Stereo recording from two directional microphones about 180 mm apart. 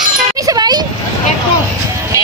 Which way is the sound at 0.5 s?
25° right (ahead or behind).